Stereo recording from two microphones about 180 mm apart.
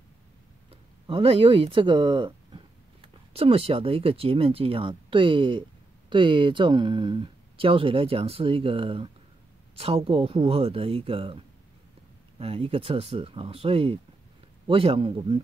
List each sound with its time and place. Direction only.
0.7 s speech: 30° right (ahead or behind)